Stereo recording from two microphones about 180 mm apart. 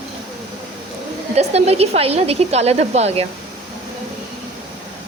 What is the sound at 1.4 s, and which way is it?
Speech, 35° right (ahead or behind).